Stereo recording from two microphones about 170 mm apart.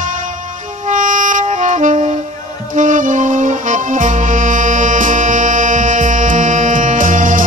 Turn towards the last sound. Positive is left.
turn(degrees=-50)  # may be behind; listen again after turning